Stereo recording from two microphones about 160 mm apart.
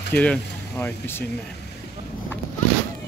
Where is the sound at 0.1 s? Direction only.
10° left (ahead or behind).